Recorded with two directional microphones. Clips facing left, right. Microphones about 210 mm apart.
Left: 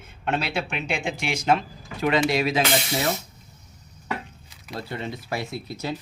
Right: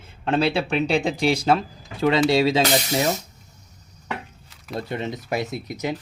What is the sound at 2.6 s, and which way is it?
Speech, 40° right (ahead or behind).